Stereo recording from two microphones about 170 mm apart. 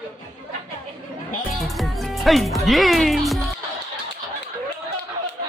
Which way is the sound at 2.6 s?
Centre (ahead or behind).